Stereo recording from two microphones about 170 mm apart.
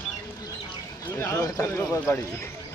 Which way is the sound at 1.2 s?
20° left (ahead or behind).